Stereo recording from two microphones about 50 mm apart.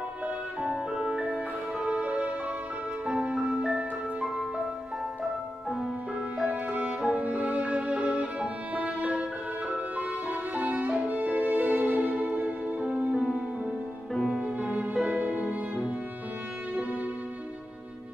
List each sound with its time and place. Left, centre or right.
1.0 s music: right
6.4 s music: right
14.2 s music: centre
15.0 s music: right